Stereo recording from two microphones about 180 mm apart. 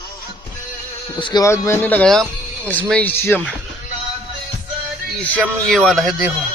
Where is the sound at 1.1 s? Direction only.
20° left (ahead or behind).